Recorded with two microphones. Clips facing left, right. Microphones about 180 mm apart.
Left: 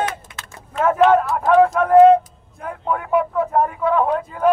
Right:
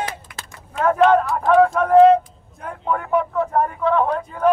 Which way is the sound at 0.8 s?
5° left (ahead or behind).